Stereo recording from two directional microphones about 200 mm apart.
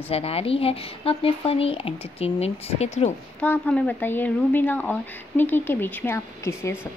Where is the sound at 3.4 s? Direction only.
5° left (ahead or behind).